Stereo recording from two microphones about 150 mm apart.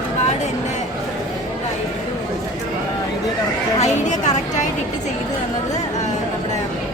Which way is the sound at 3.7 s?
50° left (ahead or behind).